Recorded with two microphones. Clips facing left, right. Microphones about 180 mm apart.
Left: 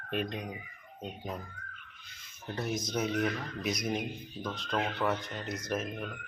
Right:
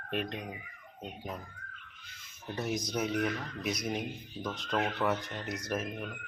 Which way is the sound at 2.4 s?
15° right (ahead or behind).